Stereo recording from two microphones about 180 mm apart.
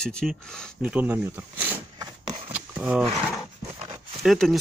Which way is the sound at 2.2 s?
30° right (ahead or behind).